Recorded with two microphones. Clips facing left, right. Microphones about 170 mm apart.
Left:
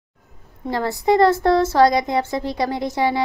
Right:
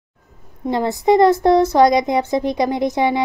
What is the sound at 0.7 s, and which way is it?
Speech, 20° right (ahead or behind).